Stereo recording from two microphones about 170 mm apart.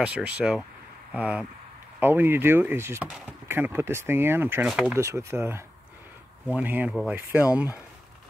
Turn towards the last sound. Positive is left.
turn(degrees=-10)  # may be behind; listen again after turning